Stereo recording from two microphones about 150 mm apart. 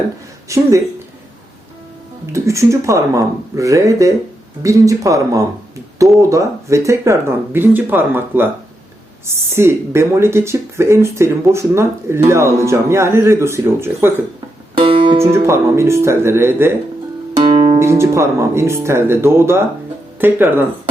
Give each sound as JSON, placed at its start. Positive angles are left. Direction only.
{"t": 0.4, "sound": "speech", "side_deg": -20}
{"t": 2.3, "sound": "speech", "side_deg": -20}
{"t": 14.8, "sound": "music", "side_deg": -35}
{"t": 15.2, "sound": "speech", "side_deg": -20}
{"t": 17.3, "sound": "music", "side_deg": -35}
{"t": 17.7, "sound": "speech", "side_deg": -20}